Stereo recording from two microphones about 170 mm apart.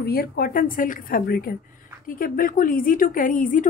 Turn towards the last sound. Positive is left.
turn(degrees=50)  # may be behind; listen again after turning